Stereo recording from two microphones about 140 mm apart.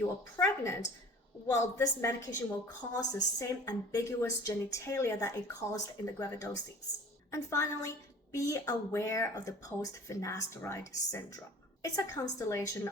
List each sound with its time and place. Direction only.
0.0 s a woman's voice: 20° left (ahead or behind)